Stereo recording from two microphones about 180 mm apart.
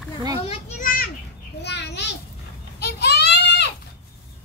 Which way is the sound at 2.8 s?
65° left (ahead or behind).